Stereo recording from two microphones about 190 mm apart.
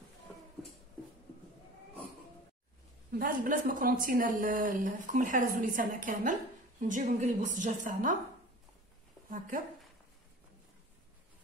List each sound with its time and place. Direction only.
3.1 s speech: 45° right (ahead or behind)